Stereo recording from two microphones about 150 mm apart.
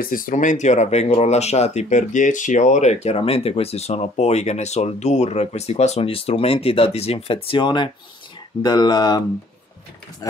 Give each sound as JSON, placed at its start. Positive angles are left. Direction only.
{"t": 0.0, "sound": "speech", "side_deg": 65}